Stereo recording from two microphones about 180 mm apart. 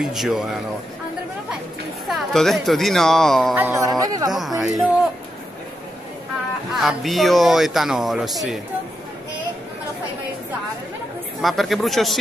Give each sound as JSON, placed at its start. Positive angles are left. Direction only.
{"t": 0.0, "sound": "speech", "side_deg": 0}
{"t": 2.0, "sound": "speech", "side_deg": 0}
{"t": 3.5, "sound": "speech", "side_deg": -15}
{"t": 4.6, "sound": "speech", "side_deg": 0}
{"t": 6.8, "sound": "speech", "side_deg": 0}
{"t": 11.4, "sound": "speech", "side_deg": 0}